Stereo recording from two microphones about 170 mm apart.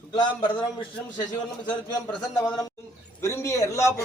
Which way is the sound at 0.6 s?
25° left (ahead or behind).